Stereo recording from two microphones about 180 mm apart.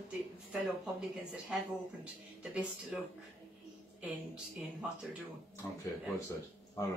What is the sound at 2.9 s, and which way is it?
Speech, 5° right (ahead or behind).